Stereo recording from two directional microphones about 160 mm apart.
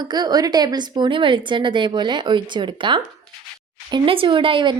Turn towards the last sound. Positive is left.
turn(degrees=-30)  # may be behind; listen again after turning